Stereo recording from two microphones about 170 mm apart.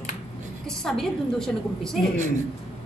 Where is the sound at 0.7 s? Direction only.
5° left (ahead or behind).